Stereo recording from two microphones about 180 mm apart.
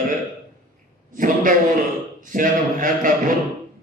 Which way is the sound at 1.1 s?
50° right (ahead or behind).